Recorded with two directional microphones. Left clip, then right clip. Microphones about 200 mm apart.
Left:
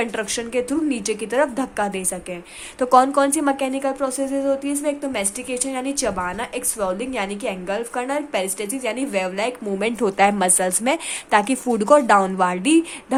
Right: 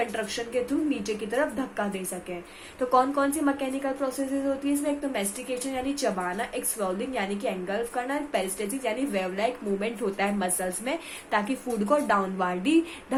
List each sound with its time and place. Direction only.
0.0 s a woman's voice: 50° left (ahead or behind)